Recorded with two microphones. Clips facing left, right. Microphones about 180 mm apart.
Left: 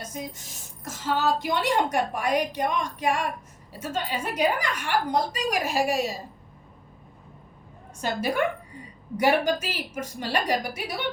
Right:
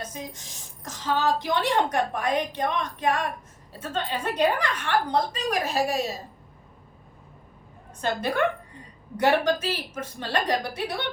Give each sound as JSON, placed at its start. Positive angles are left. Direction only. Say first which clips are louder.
{"t": 0.0, "sound": "a woman's voice", "louder": "left 1 dB", "side_deg": 10}
{"t": 8.0, "sound": "a woman's voice", "louder": "right 1 dB", "side_deg": 10}